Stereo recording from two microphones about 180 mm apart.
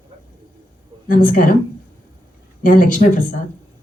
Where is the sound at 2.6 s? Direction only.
45° left (ahead or behind).